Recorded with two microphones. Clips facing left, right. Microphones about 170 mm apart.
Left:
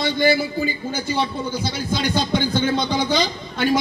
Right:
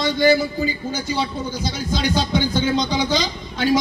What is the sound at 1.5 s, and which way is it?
A woman's voice, 55° left (ahead or behind).